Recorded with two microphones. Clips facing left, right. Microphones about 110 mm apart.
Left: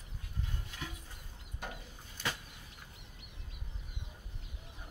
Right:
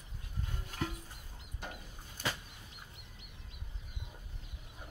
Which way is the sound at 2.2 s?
45° right (ahead or behind).